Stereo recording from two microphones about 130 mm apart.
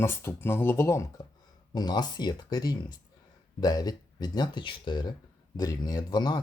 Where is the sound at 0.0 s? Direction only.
15° left (ahead or behind).